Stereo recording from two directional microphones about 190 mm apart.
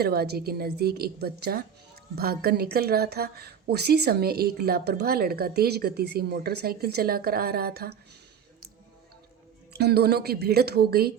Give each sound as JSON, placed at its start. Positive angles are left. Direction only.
{"t": 0.0, "sound": "speech", "side_deg": -55}
{"t": 9.7, "sound": "speech", "side_deg": -60}